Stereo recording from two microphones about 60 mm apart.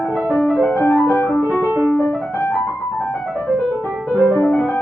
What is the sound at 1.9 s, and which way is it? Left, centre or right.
Music, left.